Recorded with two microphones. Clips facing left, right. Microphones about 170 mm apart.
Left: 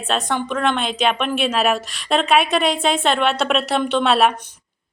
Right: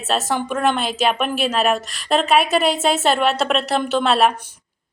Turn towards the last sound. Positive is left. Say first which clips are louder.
# even
turn(degrees=0)  # may be behind; listen again after turning